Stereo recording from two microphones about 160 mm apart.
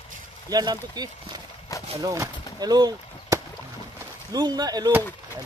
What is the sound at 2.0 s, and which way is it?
Chop, 20° right (ahead or behind).